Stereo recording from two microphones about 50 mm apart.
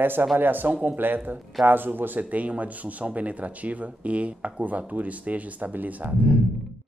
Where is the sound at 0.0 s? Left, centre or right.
Right.